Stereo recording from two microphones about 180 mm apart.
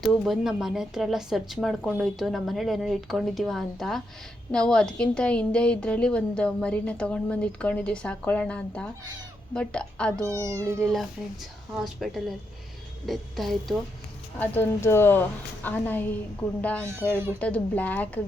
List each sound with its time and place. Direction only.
0.3 s a woman's voice: centre (ahead or behind)
10.1 s speech: 15° right (ahead or behind)
10.8 s a woman's voice: 5° left (ahead or behind)